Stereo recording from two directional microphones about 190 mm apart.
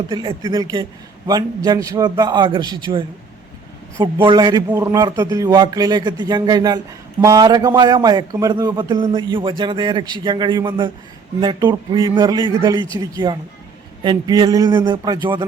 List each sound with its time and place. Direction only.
0.1 s a man's voice: 20° right (ahead or behind)